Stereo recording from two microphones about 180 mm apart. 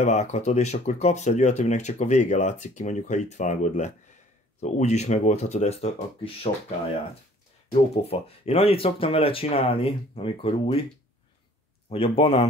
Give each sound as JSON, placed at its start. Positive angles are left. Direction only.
{"t": 0.0, "sound": "speech", "side_deg": 40}
{"t": 7.9, "sound": "speech", "side_deg": 35}
{"t": 11.9, "sound": "speech", "side_deg": 35}